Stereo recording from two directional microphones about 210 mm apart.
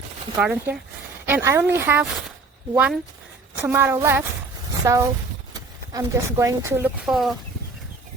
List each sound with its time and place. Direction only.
0.3 s speech: 5° right (ahead or behind)